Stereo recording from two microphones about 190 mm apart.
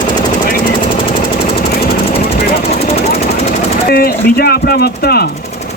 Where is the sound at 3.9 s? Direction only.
55° left (ahead or behind).